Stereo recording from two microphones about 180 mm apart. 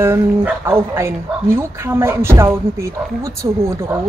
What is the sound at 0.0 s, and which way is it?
Speech, 15° right (ahead or behind).